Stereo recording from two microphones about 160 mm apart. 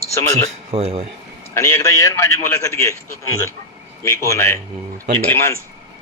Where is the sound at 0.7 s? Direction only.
40° right (ahead or behind).